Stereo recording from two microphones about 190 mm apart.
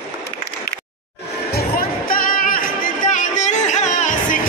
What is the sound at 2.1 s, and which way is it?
Music, 45° left (ahead or behind).